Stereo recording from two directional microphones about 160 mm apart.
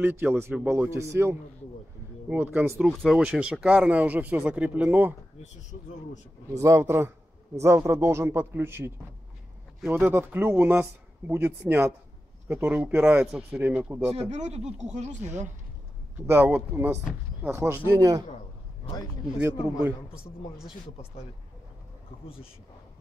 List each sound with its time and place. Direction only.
0.0 s speech: 15° right (ahead or behind)
2.8 s speech: centre (ahead or behind)
6.5 s speech: 20° right (ahead or behind)
14.3 s speech: 45° right (ahead or behind)
16.3 s speech: 15° right (ahead or behind)